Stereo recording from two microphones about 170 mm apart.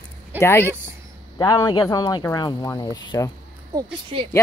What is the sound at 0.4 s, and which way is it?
Speech, 15° left (ahead or behind).